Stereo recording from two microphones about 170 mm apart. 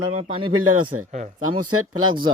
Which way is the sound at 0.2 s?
30° right (ahead or behind).